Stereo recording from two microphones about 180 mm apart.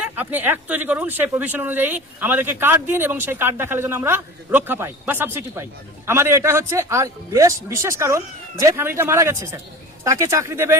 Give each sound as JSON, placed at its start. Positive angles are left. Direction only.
{"t": 0.0, "sound": "speech", "side_deg": -10}